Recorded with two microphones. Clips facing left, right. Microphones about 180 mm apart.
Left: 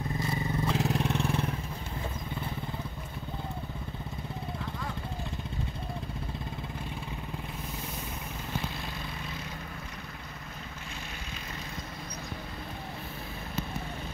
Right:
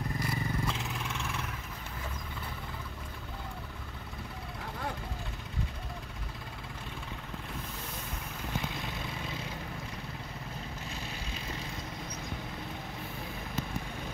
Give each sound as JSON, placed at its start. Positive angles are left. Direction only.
{"t": 0.2, "sound": "vehicle", "side_deg": 30}